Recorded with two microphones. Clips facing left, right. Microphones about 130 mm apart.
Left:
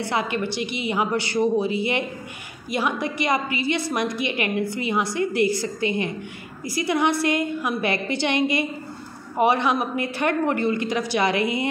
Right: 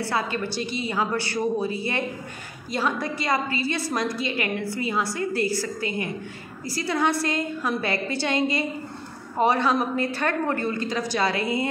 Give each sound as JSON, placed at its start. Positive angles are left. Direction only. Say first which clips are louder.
{"t": 0.0, "sound": "a woman's voice", "louder": "left 2 dB", "side_deg": 15}